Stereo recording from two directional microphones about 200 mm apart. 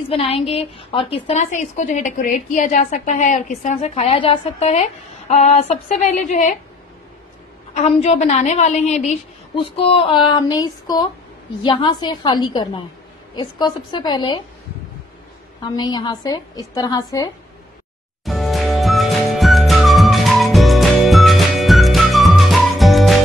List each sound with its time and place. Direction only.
0.1 s a woman's voice: 30° left (ahead or behind)
7.7 s a woman's voice: 35° left (ahead or behind)
15.7 s a woman's voice: 20° left (ahead or behind)
18.2 s music: centre (ahead or behind)